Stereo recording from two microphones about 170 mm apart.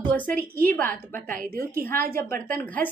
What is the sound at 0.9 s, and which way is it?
A woman's voice, 55° right (ahead or behind).